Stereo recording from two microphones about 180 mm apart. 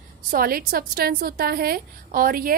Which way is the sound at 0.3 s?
55° right (ahead or behind).